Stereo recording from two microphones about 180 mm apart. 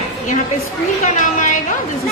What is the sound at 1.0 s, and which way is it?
Speech, 45° left (ahead or behind).